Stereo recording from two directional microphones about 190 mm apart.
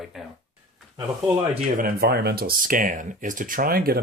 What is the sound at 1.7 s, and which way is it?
Speech, 50° right (ahead or behind).